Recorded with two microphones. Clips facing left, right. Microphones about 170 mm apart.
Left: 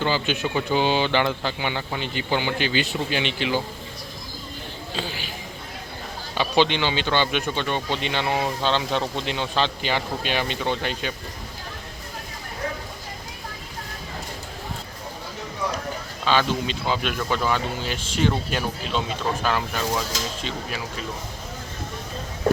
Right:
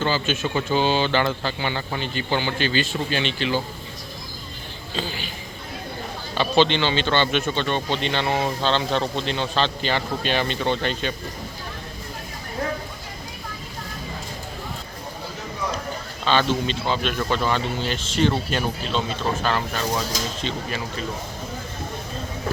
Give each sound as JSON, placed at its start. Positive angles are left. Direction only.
{"t": 0.0, "sound": "speech", "side_deg": 15}
{"t": 4.9, "sound": "speech", "side_deg": 10}
{"t": 6.3, "sound": "speech", "side_deg": 10}
{"t": 16.2, "sound": "speech", "side_deg": 10}